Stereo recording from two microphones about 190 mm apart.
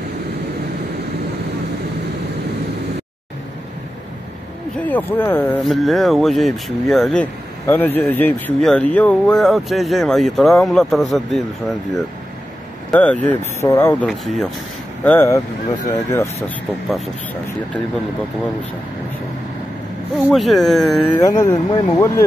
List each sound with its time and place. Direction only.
4.7 s speech: 10° left (ahead or behind)
5.6 s speech: centre (ahead or behind)
12.9 s speech: 5° left (ahead or behind)
14.0 s speech: centre (ahead or behind)
15.0 s speech: 15° left (ahead or behind)
20.3 s speech: centre (ahead or behind)
21.2 s speech: 15° left (ahead or behind)